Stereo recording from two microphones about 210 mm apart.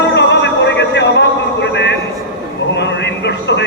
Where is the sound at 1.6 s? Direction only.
55° left (ahead or behind).